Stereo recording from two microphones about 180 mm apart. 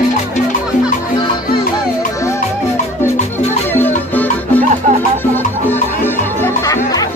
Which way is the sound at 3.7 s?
10° left (ahead or behind).